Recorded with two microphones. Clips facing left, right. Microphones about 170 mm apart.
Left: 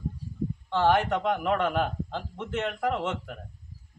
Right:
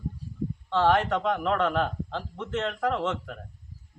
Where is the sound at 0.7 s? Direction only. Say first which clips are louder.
Right 1 dB; 5° left (ahead or behind).